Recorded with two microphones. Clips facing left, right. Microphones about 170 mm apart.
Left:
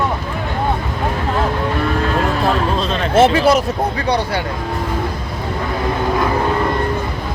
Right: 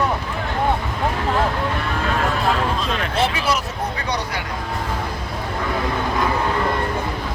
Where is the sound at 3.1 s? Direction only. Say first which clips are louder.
Left 11 dB; 45° left (ahead or behind).